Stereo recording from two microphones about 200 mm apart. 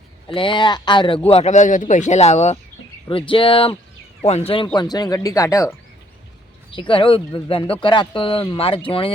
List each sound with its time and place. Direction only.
0.3 s speech: 25° left (ahead or behind)
6.7 s speech: 25° left (ahead or behind)